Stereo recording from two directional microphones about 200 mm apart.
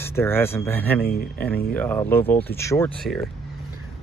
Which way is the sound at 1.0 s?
50° left (ahead or behind).